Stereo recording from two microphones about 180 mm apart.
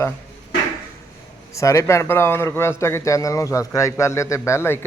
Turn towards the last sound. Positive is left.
turn(degrees=15)  # may be behind; listen again after turning